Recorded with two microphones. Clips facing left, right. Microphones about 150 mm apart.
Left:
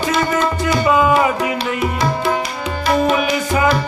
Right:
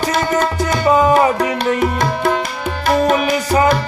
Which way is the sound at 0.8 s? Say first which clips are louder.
Right 3 dB; 35° right (ahead or behind).